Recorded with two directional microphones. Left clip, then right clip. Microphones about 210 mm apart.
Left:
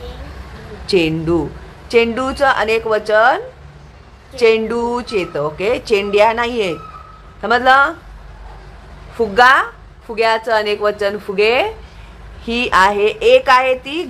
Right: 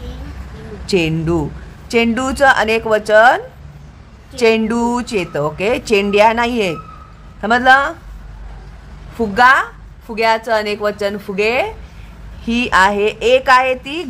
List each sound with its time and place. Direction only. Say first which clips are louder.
0.8 s a woman's voice: left 1 dB; 15° right (ahead or behind)
9.1 s a woman's voice: even; 20° right (ahead or behind)